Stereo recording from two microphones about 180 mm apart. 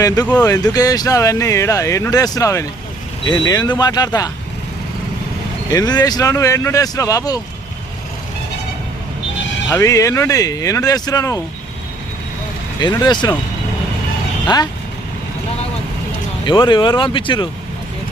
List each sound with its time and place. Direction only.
0.4 s speech: 20° left (ahead or behind)
5.7 s speech: 20° left (ahead or behind)
9.6 s speech: 15° left (ahead or behind)
12.8 s speech: 25° left (ahead or behind)
14.4 s speech: 20° left (ahead or behind)
16.5 s speech: 25° left (ahead or behind)